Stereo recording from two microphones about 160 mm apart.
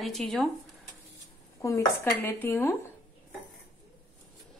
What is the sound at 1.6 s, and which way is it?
Speech, 20° left (ahead or behind).